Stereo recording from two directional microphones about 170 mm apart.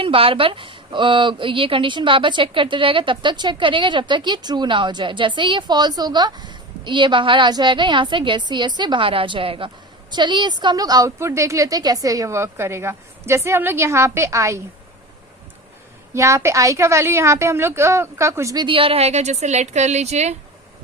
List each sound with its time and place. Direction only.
0.0 s a woman's voice: 30° right (ahead or behind); by 14.6 s 15° right (ahead or behind)
16.1 s a woman's voice: 15° right (ahead or behind); by 20.3 s 40° right (ahead or behind)